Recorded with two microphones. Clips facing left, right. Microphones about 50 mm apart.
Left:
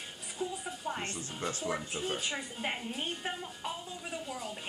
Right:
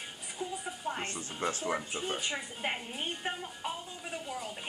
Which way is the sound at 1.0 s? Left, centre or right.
Right.